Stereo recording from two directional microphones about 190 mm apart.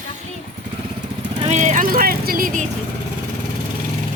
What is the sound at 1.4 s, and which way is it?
Speech, 35° right (ahead or behind).